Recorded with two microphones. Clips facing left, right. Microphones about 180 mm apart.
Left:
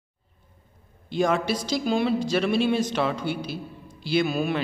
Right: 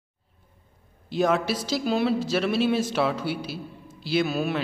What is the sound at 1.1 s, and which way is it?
A man's voice, 5° right (ahead or behind).